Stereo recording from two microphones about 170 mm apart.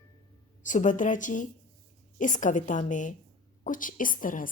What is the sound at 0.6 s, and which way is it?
Speech, 50° left (ahead or behind).